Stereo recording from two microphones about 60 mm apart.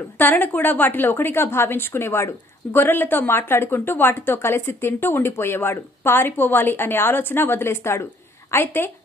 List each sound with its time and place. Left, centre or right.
0.2 s a woman's voice: left